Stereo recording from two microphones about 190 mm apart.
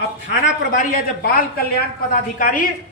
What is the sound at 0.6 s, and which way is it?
A woman's voice, 45° left (ahead or behind).